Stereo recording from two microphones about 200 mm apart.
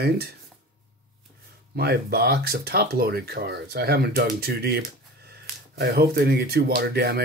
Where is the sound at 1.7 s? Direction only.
50° right (ahead or behind).